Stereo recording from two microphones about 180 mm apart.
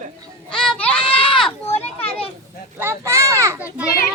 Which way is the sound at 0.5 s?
Centre (ahead or behind).